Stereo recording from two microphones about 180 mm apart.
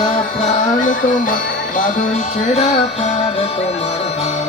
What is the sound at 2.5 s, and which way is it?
Music, 35° left (ahead or behind).